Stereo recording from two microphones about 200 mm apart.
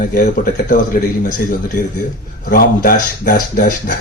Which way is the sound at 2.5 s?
45° left (ahead or behind).